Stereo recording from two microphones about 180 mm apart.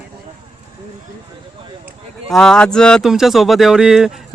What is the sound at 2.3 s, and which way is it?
Speech, 5° left (ahead or behind).